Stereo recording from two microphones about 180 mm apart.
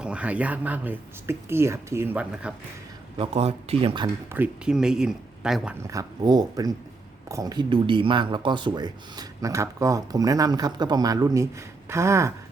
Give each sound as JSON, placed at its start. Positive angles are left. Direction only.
{"t": 0.0, "sound": "speech", "side_deg": -5}
{"t": 3.2, "sound": "speech", "side_deg": -35}
{"t": 4.3, "sound": "speech", "side_deg": -10}
{"t": 5.8, "sound": "speech", "side_deg": -20}